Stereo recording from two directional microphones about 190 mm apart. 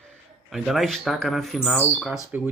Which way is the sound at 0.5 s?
Centre (ahead or behind).